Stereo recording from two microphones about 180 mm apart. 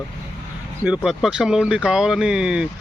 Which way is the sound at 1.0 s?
5° right (ahead or behind).